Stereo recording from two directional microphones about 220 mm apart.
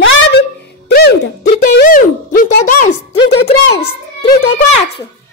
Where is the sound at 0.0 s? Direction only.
50° left (ahead or behind).